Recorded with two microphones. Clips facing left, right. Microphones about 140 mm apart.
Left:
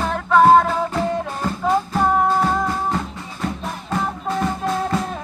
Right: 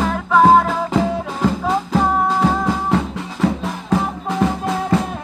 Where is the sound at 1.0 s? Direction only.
90° right.